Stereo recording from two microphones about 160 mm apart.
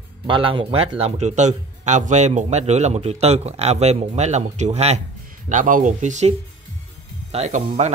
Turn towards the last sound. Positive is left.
turn(degrees=-45)  # may be behind; listen again after turning